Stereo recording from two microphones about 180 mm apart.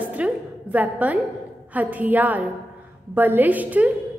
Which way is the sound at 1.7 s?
10° right (ahead or behind).